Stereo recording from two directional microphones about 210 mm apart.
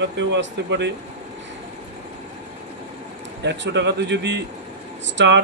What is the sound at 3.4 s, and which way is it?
Speech, 55° right (ahead or behind).